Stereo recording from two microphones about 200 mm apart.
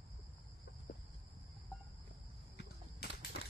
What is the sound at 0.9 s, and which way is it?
Cricket, 50° left (ahead or behind).